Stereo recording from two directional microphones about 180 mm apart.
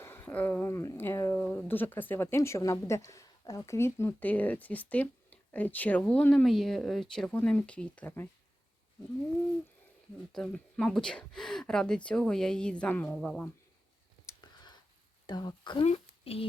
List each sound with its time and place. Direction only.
0.0 s a woman's voice: 10° left (ahead or behind)
10.3 s speech: 5° left (ahead or behind)
14.3 s whispering: 25° left (ahead or behind)
15.3 s speech: 25° left (ahead or behind)